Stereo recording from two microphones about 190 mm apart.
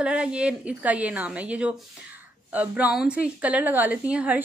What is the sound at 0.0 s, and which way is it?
A woman's voice, 5° right (ahead or behind).